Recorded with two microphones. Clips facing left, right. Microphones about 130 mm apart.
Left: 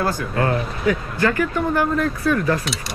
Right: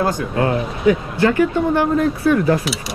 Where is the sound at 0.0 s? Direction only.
20° right (ahead or behind).